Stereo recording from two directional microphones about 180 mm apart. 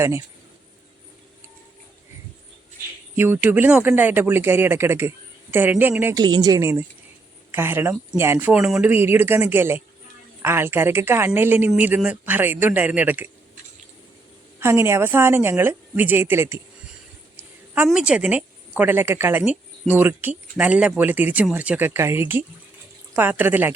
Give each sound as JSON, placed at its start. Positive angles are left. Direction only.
{"t": 3.2, "sound": "speech", "side_deg": -10}
{"t": 6.2, "sound": "speech", "side_deg": -25}
{"t": 14.6, "sound": "speech", "side_deg": -15}
{"t": 17.8, "sound": "speech", "side_deg": -5}